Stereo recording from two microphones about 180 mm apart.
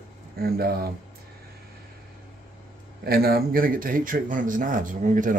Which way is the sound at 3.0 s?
60° right (ahead or behind).